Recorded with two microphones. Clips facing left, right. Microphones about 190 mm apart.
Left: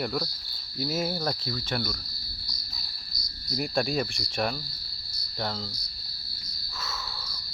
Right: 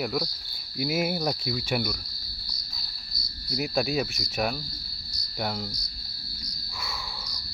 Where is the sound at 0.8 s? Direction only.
10° right (ahead or behind).